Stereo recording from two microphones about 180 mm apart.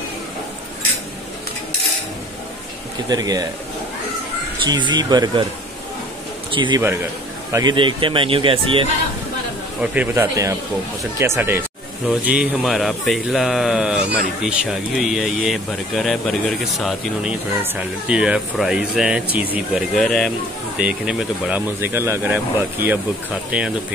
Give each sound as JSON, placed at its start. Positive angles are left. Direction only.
{"t": 3.1, "sound": "speech", "side_deg": -20}
{"t": 4.6, "sound": "speech", "side_deg": -25}
{"t": 6.5, "sound": "a man's voice", "side_deg": -25}
{"t": 9.8, "sound": "speech", "side_deg": -10}